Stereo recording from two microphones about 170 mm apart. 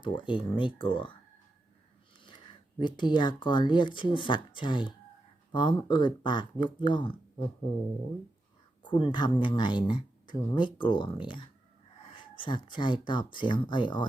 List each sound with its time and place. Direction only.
0.0 s speech: 30° left (ahead or behind)
2.2 s speech: 25° left (ahead or behind)
8.8 s speech: 30° left (ahead or behind)